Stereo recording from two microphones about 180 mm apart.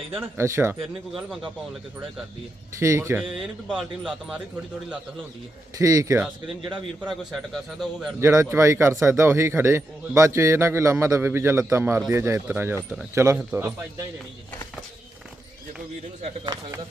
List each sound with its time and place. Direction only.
0.1 s a man's voice: 15° right (ahead or behind)
0.8 s a man's voice: centre (ahead or behind)
2.7 s a man's voice: 15° right (ahead or behind)
3.7 s a man's voice: centre (ahead or behind)
5.7 s speech: 20° right (ahead or behind)
7.0 s a man's voice: centre (ahead or behind)
8.2 s a man's voice: 15° right (ahead or behind)